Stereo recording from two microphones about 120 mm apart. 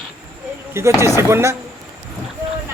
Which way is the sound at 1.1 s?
20° right (ahead or behind).